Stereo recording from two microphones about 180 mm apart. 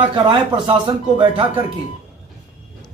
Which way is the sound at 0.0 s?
25° right (ahead or behind).